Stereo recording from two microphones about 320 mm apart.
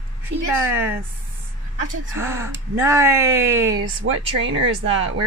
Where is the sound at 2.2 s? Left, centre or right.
Centre.